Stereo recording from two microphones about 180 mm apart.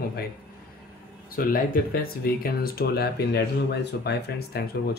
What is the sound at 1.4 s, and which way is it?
Speech, 55° left (ahead or behind).